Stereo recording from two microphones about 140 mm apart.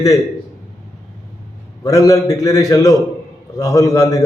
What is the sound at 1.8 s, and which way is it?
A man's voice, 25° left (ahead or behind).